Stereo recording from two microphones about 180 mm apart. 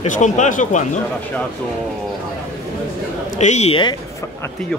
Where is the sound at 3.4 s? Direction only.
40° left (ahead or behind).